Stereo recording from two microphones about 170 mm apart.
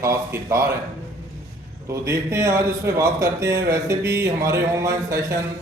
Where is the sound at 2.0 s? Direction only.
15° right (ahead or behind).